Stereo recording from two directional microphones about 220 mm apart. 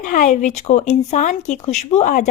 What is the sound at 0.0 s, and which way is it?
Speech, 35° left (ahead or behind).